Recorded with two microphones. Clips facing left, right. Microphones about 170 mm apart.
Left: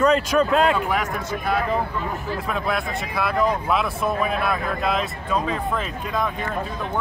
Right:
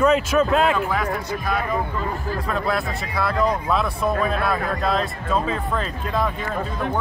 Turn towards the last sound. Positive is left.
turn(degrees=0)  # may be behind; listen again after turning